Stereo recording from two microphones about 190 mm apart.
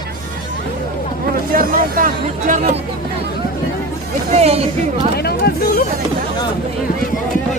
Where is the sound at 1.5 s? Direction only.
50° right (ahead or behind).